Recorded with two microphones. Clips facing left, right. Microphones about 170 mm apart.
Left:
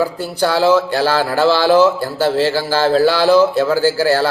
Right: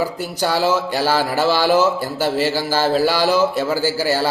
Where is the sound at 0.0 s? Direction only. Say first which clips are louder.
Left 4 dB; 10° right (ahead or behind).